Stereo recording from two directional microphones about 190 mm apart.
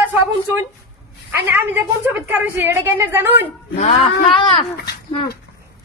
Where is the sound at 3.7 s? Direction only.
30° left (ahead or behind).